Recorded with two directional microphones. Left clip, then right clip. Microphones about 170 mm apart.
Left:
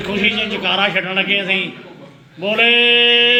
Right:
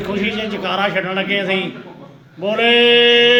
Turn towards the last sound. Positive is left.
turn(degrees=5)  # may be behind; listen again after turning